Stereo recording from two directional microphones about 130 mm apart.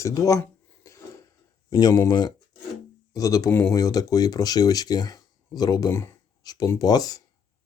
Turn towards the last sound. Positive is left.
turn(degrees=30)  # may be behind; listen again after turning